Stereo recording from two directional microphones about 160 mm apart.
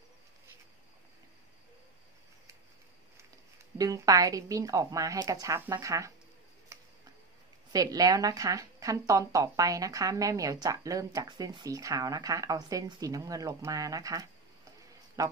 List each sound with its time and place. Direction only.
3.7 s speech: 20° right (ahead or behind)
6.7 s tick-tock: 15° right (ahead or behind)
7.7 s speech: 25° right (ahead or behind)